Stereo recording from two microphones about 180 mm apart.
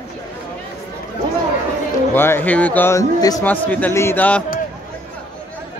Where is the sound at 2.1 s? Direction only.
10° left (ahead or behind).